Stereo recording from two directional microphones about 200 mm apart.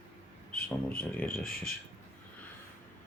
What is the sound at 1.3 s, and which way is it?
Speech, 45° left (ahead or behind).